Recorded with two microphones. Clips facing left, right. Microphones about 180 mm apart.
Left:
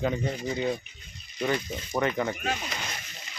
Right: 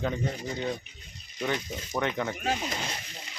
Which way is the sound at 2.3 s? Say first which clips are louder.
Right 1 dB; 30° right (ahead or behind).